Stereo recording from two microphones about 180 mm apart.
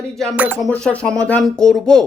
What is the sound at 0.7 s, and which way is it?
Speech, 5° left (ahead or behind).